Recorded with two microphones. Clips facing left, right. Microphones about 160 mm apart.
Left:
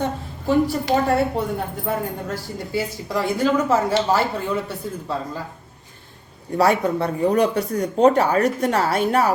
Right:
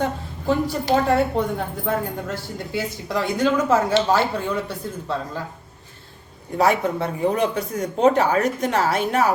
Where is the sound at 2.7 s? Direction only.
10° left (ahead or behind).